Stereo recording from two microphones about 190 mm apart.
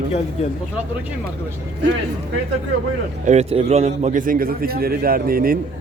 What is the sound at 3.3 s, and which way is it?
A man's voice, 35° right (ahead or behind).